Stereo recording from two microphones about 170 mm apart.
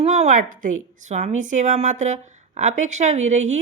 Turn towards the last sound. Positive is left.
turn(degrees=-45)  # may be behind; listen again after turning